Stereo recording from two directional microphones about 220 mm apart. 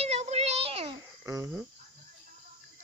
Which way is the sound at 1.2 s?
15° right (ahead or behind).